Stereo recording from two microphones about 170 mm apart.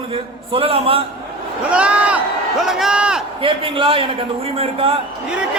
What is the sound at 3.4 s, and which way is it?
A man's voice, 30° right (ahead or behind).